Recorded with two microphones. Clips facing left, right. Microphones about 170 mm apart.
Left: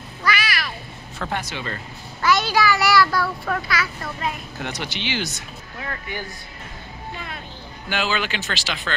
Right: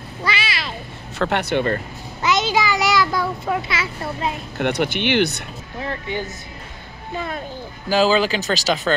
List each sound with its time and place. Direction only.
0.2 s a sound: 25° right (ahead or behind)
1.1 s speech: 70° right (ahead or behind); by 1.8 s 55° right (ahead or behind)
2.2 s a child's voice: 20° right (ahead or behind)
4.6 s speech: 60° right (ahead or behind)
5.8 s a child's voice: 25° right (ahead or behind)
7.9 s speech: 35° right (ahead or behind)